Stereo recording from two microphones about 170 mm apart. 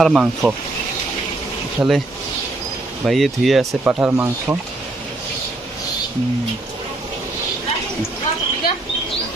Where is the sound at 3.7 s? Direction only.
10° right (ahead or behind).